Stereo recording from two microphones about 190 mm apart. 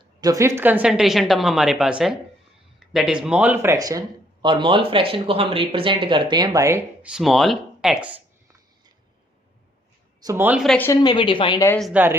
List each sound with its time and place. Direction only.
0.2 s a woman's voice: 15° right (ahead or behind)
7.1 s a woman's voice: centre (ahead or behind)
10.2 s speech: 10° right (ahead or behind)
10.6 s a woman's voice: centre (ahead or behind)
10.8 s speech: 20° left (ahead or behind)
11.8 s a woman's voice: 5° right (ahead or behind)